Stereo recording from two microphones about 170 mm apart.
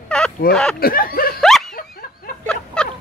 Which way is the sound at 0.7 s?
60° left (ahead or behind).